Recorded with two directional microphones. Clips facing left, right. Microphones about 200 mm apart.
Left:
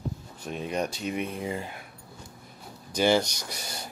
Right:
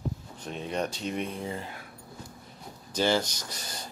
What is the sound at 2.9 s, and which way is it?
Speech, 15° left (ahead or behind).